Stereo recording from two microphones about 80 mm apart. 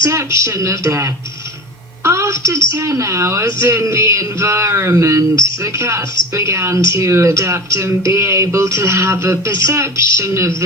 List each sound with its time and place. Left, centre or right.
0.0 s a woman's voice: right
2.0 s a sound: right
2.7 s a woman's voice: right